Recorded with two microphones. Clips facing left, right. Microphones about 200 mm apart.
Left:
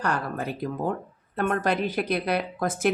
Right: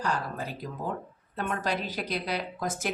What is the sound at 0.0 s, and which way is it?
A woman's voice, 60° left (ahead or behind).